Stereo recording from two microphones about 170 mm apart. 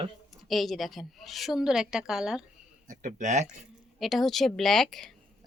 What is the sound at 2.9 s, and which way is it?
Speech, 45° right (ahead or behind).